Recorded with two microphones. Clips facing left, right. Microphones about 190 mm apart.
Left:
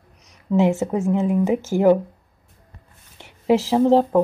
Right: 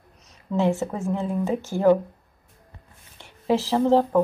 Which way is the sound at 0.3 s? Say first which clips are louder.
Left 4 dB; 15° left (ahead or behind).